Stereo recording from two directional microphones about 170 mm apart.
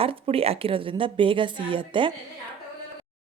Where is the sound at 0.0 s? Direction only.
35° right (ahead or behind).